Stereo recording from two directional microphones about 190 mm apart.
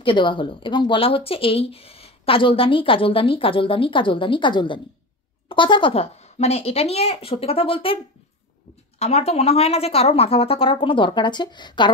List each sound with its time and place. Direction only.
0.0 s a woman's voice: 25° left (ahead or behind)
9.0 s a woman's voice: 35° left (ahead or behind)